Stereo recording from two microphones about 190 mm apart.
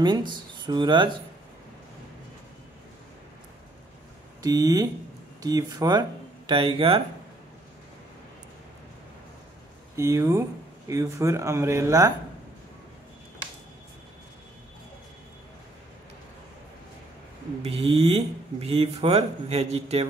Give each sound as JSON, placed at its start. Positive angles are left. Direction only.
{"t": 0.0, "sound": "speech", "side_deg": -25}
{"t": 4.4, "sound": "speech", "side_deg": -20}
{"t": 9.9, "sound": "speech", "side_deg": -15}
{"t": 17.6, "sound": "speech", "side_deg": -30}